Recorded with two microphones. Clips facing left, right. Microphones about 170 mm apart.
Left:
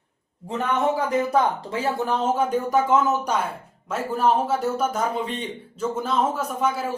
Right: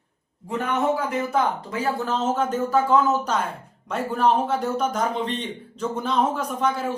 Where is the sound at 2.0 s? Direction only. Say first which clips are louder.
Left 1 dB; 10° left (ahead or behind).